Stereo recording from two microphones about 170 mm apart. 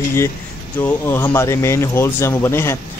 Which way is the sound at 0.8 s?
15° left (ahead or behind).